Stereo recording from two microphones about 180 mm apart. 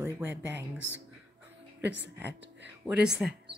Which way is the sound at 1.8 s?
75° right (ahead or behind).